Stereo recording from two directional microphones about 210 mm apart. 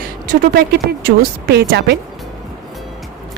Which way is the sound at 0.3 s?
45° right (ahead or behind).